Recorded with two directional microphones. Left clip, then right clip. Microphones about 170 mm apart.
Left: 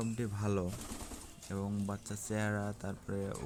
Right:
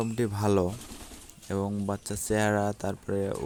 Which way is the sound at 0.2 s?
40° right (ahead or behind).